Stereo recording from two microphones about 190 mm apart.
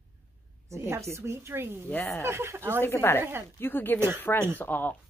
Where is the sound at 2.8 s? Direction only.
10° left (ahead or behind).